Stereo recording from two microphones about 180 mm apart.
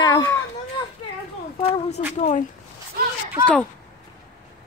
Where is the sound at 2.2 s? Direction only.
40° left (ahead or behind).